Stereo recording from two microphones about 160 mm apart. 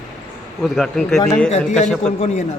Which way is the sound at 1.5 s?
45° left (ahead or behind).